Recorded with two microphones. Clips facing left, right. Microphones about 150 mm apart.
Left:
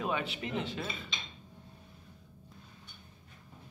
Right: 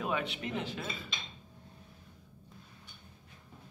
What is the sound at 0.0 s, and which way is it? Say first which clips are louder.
Speech: even; centre (ahead or behind).